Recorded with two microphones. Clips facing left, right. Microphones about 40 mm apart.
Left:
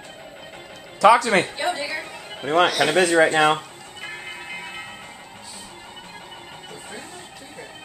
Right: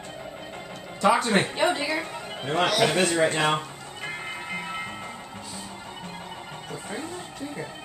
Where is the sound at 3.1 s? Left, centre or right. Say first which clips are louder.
Left 6 dB; left.